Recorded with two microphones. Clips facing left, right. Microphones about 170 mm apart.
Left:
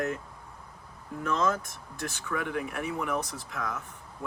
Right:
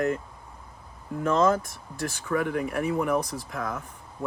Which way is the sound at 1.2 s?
50° right (ahead or behind).